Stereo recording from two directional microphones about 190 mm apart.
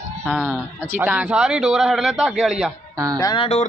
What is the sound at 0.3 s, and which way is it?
A man's voice, 10° right (ahead or behind).